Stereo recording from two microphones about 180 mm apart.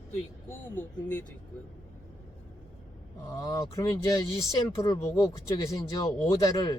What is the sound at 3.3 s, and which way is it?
Speech, 20° left (ahead or behind).